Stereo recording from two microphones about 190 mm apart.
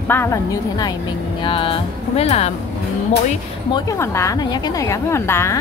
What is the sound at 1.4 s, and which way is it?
A woman's voice, 25° left (ahead or behind).